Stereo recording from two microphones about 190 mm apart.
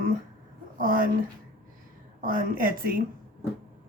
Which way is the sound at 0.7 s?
45° right (ahead or behind).